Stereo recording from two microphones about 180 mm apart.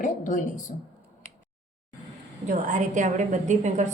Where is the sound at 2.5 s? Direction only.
45° right (ahead or behind).